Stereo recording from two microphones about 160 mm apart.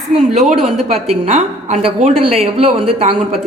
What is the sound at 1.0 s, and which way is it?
A woman's voice, 40° right (ahead or behind).